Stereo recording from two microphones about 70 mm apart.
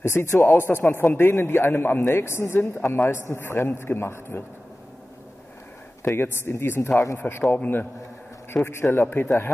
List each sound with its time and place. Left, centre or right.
0.0 s a man's voice: left
6.0 s a man's voice: left
8.6 s a man's voice: left